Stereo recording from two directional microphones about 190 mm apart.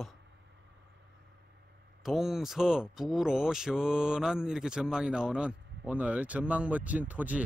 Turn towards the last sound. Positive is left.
turn(degrees=-10)  # may be behind; listen again after turning